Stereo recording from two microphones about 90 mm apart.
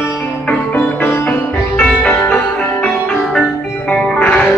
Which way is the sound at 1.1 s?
25° left (ahead or behind).